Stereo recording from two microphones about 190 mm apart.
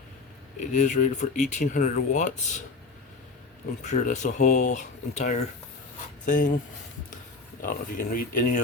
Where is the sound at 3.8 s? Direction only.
40° left (ahead or behind).